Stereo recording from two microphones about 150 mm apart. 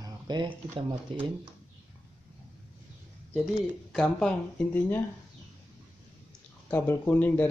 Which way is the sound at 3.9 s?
Centre (ahead or behind).